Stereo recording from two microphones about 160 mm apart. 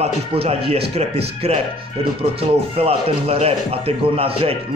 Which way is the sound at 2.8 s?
40° right (ahead or behind).